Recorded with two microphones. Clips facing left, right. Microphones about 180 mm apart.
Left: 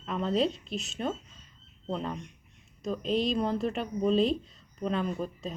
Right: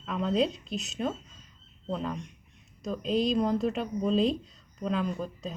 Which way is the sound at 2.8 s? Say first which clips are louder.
Right 1 dB; centre (ahead or behind).